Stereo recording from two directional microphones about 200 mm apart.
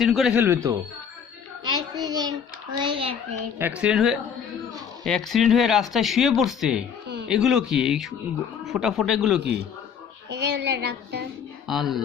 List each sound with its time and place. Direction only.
0.0 s a man's voice: centre (ahead or behind)
1.6 s child singing: 20° right (ahead or behind)
2.9 s a child's voice: 25° right (ahead or behind)
3.6 s speech: 5° right (ahead or behind)
10.2 s speech: 60° right (ahead or behind)
11.7 s speech: centre (ahead or behind)